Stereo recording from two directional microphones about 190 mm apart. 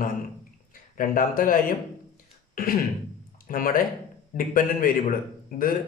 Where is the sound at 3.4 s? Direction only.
45° left (ahead or behind).